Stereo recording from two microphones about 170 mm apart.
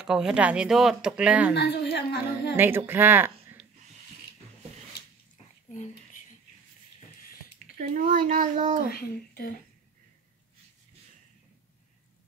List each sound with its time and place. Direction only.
0.0 s speech: 5° right (ahead or behind)
1.5 s a woman's voice: 80° left
2.5 s speech: 10° right (ahead or behind)
7.7 s speech: 50° right (ahead or behind)
8.8 s speech: 65° left (ahead or behind)